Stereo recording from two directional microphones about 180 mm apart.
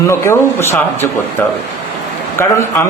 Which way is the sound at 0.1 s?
15° left (ahead or behind).